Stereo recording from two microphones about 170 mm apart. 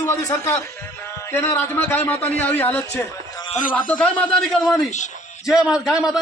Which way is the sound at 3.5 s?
50° left (ahead or behind).